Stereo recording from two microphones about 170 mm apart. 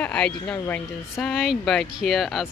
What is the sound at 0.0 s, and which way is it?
A woman's voice, 10° left (ahead or behind).